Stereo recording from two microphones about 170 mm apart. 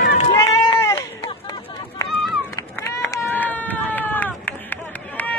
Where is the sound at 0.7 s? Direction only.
15° left (ahead or behind).